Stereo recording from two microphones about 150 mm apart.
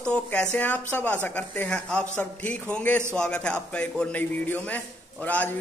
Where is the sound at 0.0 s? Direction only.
10° left (ahead or behind).